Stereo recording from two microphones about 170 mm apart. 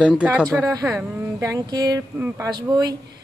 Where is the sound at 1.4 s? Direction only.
20° right (ahead or behind).